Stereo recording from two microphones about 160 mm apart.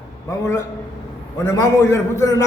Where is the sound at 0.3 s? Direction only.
20° left (ahead or behind).